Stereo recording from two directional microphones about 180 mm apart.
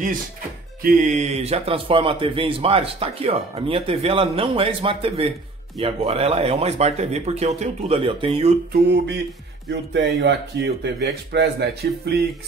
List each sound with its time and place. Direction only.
0.8 s a man's voice: 45° right (ahead or behind)
8.8 s speech: 70° right (ahead or behind)